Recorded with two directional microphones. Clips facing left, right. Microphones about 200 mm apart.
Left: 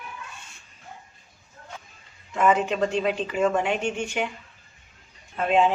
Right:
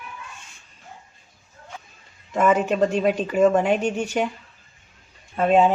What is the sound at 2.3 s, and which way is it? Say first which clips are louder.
Speech: right 2 dB; 40° right (ahead or behind).